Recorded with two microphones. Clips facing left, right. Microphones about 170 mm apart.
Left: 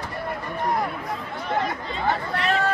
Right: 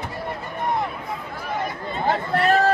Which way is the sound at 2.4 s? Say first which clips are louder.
Right 9 dB; 50° right (ahead or behind).